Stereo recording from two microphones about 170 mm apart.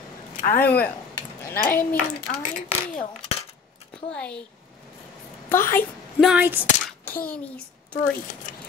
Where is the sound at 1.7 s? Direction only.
50° left (ahead or behind).